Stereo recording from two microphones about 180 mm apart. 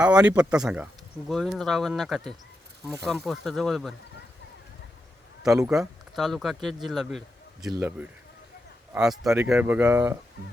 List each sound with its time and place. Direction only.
0.0 s speech: 5° right (ahead or behind)
5.5 s speech: 15° right (ahead or behind)
5.7 s speech: centre (ahead or behind)
7.8 s speech: 10° right (ahead or behind)